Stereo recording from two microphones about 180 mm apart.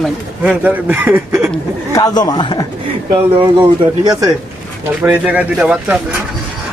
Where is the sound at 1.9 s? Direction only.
20° left (ahead or behind).